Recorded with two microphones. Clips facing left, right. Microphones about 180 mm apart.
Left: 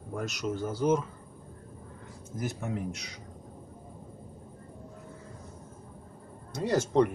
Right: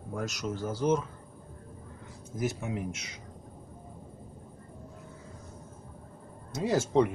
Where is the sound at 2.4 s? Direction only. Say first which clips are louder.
Right 1 dB; 5° right (ahead or behind).